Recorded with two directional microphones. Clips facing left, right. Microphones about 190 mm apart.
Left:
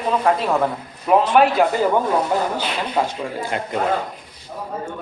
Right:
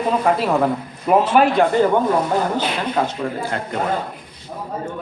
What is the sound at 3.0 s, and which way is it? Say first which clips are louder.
Speech: even; 15° left (ahead or behind).